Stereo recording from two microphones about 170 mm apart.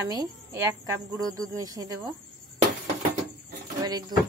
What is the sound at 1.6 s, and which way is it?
Speech, 20° right (ahead or behind).